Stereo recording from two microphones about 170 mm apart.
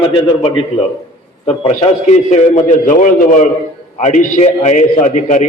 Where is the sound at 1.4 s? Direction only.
40° left (ahead or behind).